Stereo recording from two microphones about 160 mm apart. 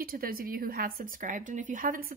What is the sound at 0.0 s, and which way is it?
A woman's voice, 65° right (ahead or behind).